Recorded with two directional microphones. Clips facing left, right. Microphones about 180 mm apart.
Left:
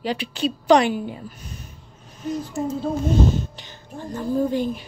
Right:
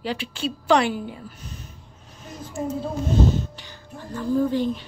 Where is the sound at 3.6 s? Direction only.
20° left (ahead or behind).